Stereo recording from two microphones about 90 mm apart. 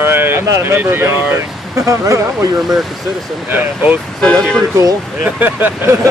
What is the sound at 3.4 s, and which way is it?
Speech, 20° right (ahead or behind).